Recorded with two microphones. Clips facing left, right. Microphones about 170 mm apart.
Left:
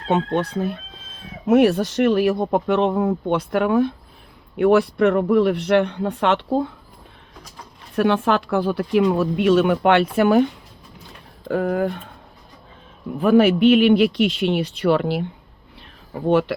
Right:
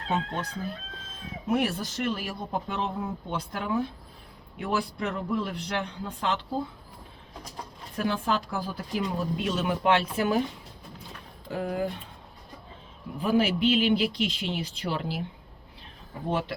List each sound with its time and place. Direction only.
0.1 s speech: 75° left (ahead or behind)
7.9 s speech: 75° left (ahead or behind); by 12.1 s 60° left (ahead or behind)
13.1 s speech: 60° left (ahead or behind)